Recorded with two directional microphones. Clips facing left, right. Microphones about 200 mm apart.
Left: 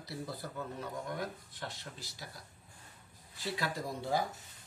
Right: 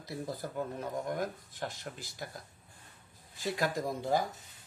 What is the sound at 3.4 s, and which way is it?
Speech, 45° right (ahead or behind).